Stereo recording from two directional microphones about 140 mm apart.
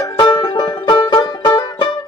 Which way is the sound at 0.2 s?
30° left (ahead or behind).